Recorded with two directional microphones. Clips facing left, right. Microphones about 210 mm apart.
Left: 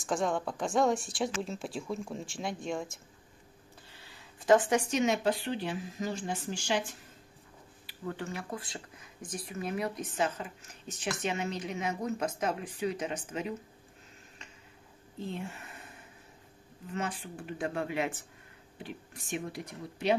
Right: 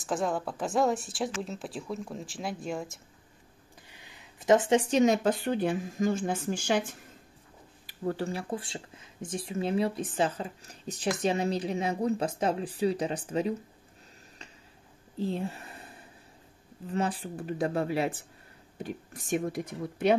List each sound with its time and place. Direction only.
0.0 s speech: 5° right (ahead or behind)
3.9 s a sound: 15° right (ahead or behind)
5.0 s speech: 45° right (ahead or behind)
7.8 s speech: 40° right (ahead or behind)
15.1 s speech: 35° right (ahead or behind)
16.9 s speech: 35° right (ahead or behind)